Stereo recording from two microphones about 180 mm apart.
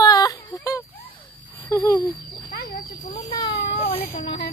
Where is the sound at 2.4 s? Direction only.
50° left (ahead or behind).